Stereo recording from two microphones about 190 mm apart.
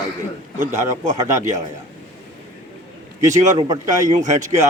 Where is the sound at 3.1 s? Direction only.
15° right (ahead or behind).